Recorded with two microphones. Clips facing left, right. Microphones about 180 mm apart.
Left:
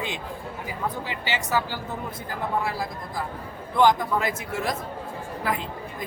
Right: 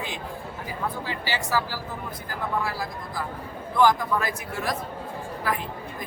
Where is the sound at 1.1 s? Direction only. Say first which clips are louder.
Even; 20° left (ahead or behind).